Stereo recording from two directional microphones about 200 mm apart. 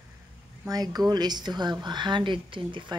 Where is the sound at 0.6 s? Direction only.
20° right (ahead or behind).